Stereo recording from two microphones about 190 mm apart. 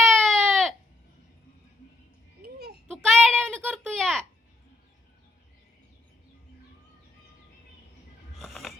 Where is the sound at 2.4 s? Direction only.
55° right (ahead or behind).